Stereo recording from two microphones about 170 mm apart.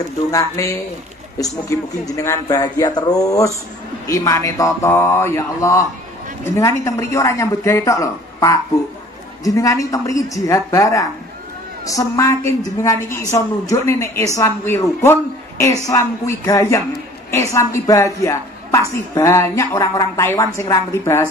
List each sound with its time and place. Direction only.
0.3 s a woman's voice: 20° left (ahead or behind)